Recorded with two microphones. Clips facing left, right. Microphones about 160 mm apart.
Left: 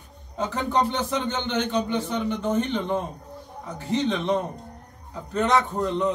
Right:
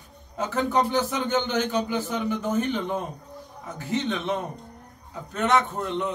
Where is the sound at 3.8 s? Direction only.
Centre (ahead or behind).